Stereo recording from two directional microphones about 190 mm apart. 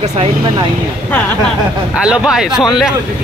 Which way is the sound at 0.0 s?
35° right (ahead or behind).